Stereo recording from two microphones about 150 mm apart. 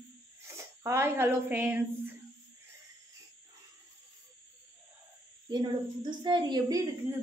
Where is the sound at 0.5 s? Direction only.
20° right (ahead or behind).